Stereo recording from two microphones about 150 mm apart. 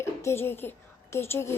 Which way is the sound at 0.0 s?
15° left (ahead or behind).